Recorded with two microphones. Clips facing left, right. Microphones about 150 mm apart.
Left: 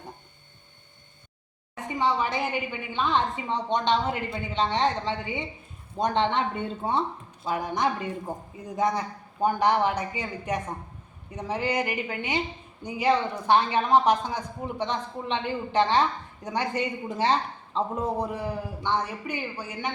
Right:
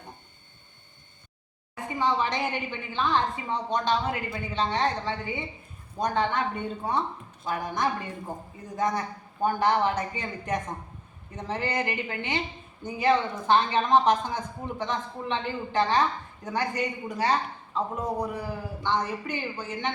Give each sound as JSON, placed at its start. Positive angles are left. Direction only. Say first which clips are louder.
{"t": 2.0, "sound": "a woman's voice", "louder": "left 1 dB", "side_deg": 10}